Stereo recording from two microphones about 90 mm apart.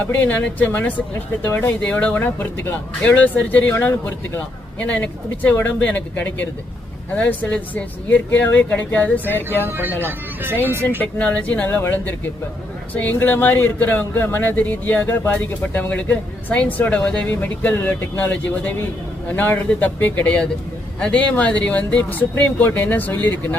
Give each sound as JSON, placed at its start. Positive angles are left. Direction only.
{"t": 0.0, "sound": "speech", "side_deg": 20}
{"t": 9.6, "sound": "speech", "side_deg": -25}
{"t": 11.0, "sound": "speech", "side_deg": 15}